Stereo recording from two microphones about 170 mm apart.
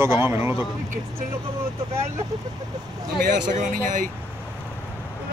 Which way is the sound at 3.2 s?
50° right (ahead or behind).